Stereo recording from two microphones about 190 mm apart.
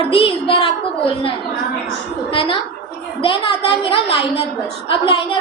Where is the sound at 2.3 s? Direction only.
25° left (ahead or behind).